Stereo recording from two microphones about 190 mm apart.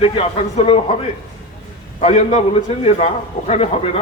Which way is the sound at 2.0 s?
35° left (ahead or behind).